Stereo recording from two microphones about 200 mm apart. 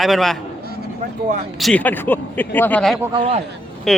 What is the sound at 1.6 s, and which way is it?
Speech, 5° left (ahead or behind).